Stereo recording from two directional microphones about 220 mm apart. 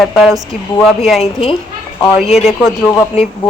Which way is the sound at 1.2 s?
25° left (ahead or behind).